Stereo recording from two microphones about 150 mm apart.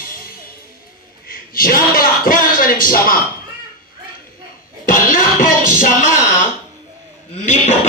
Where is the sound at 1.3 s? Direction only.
70° left (ahead or behind).